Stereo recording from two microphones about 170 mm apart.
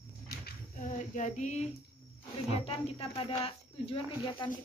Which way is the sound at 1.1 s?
45° left (ahead or behind).